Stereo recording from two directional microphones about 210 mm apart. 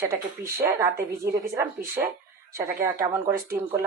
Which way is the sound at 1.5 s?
10° right (ahead or behind).